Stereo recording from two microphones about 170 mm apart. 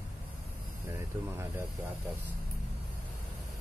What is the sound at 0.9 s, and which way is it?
Speech, 15° right (ahead or behind).